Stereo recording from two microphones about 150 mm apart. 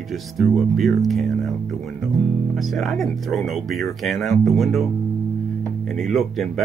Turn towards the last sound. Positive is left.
turn(degrees=0)  # may be behind; listen again after turning